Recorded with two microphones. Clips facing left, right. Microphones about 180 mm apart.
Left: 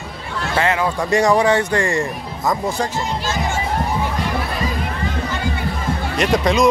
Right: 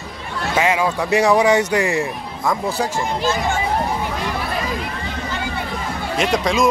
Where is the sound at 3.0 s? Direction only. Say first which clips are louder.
Right 2 dB; 60° right (ahead or behind).